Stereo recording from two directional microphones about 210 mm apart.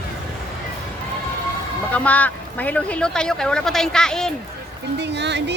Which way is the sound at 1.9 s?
5° left (ahead or behind).